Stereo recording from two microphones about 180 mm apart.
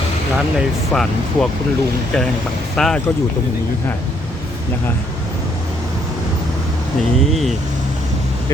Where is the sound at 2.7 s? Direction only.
5° left (ahead or behind).